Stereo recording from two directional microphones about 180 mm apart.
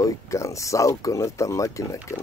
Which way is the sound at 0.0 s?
15° left (ahead or behind).